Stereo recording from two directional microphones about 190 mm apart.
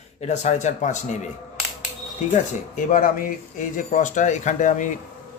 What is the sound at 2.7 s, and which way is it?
A man's voice, 45° left (ahead or behind).